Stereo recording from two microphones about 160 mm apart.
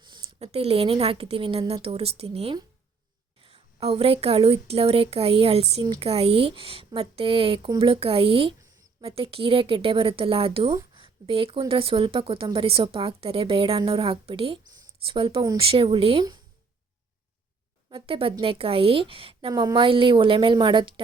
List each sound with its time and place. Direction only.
0.0 s a woman's voice: 30° right (ahead or behind)
10.9 s a sound: 35° right (ahead or behind)
11.7 s a woman's voice: 35° right (ahead or behind)
17.8 s a woman's voice: 35° right (ahead or behind)